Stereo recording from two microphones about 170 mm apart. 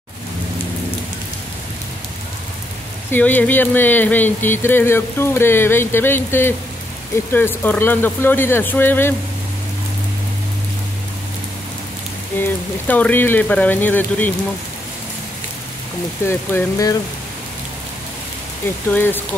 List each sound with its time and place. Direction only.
3.1 s speech: 10° left (ahead or behind)
12.4 s speech: 10° left (ahead or behind)
16.3 s speech: 15° left (ahead or behind)
18.9 s speech: 10° left (ahead or behind)